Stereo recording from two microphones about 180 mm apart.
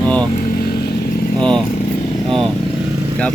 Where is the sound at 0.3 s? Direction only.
60° left (ahead or behind).